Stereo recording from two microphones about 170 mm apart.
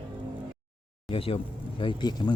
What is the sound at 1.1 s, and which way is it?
Speech, 35° left (ahead or behind).